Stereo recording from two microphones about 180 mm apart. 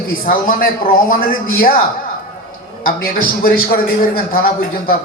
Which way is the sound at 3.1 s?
55° left (ahead or behind).